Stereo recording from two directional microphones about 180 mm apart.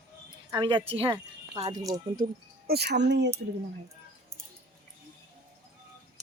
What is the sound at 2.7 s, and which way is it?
Speech, 65° right (ahead or behind).